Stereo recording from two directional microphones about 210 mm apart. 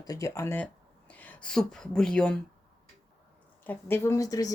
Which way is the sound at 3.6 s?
10° left (ahead or behind).